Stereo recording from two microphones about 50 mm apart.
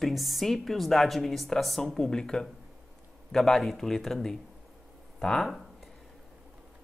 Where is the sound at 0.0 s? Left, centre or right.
Centre.